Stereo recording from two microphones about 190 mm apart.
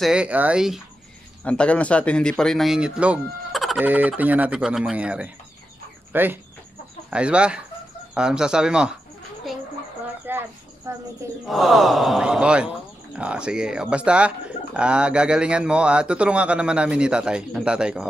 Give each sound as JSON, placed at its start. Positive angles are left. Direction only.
{"t": 0.0, "sound": "speech", "side_deg": -5}
{"t": 1.4, "sound": "speech", "side_deg": 5}
{"t": 10.3, "sound": "cricket", "side_deg": -10}
{"t": 10.9, "sound": "speech", "side_deg": -15}
{"t": 11.4, "sound": "speech", "side_deg": 0}